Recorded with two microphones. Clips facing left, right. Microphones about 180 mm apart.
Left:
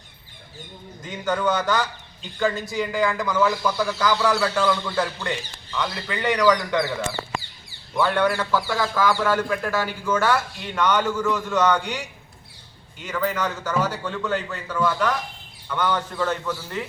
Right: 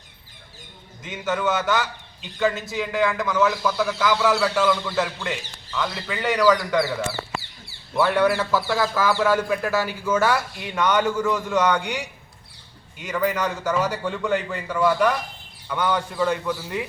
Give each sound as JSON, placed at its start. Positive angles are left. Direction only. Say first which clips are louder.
{"t": 1.0, "sound": "speech", "louder": "left 1 dB", "side_deg": -5}
{"t": 7.9, "sound": "a man's voice", "louder": "right 2 dB", "side_deg": -5}